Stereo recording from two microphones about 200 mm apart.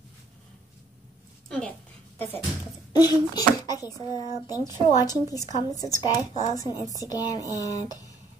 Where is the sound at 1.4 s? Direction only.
5° left (ahead or behind).